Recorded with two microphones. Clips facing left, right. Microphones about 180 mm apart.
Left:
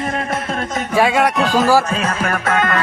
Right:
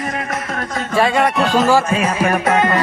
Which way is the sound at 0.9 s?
5° left (ahead or behind).